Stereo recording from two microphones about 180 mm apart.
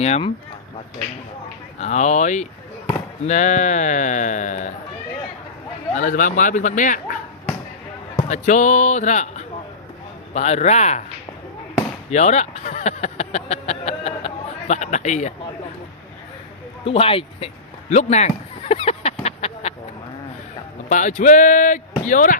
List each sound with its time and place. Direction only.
0.0 s speech: 35° left (ahead or behind)
1.8 s speech: 40° left (ahead or behind)
5.9 s speech: 45° left (ahead or behind)
8.3 s speech: 45° left (ahead or behind)
12.1 s a sound: 40° left (ahead or behind)
16.8 s a sound: 30° left (ahead or behind)
20.9 s speech: 45° left (ahead or behind)